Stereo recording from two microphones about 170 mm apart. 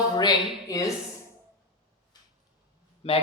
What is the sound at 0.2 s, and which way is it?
Speech, 20° left (ahead or behind).